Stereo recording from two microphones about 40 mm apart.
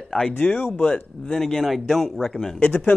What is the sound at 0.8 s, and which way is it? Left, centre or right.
Speech, left.